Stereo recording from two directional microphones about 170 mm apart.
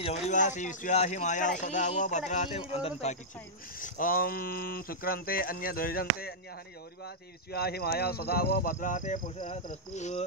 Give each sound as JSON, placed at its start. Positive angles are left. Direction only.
{"t": 0.0, "sound": "speech", "side_deg": 40}
{"t": 3.8, "sound": "speech", "side_deg": 55}
{"t": 7.5, "sound": "speech", "side_deg": 65}
{"t": 8.7, "sound": "speech", "side_deg": 50}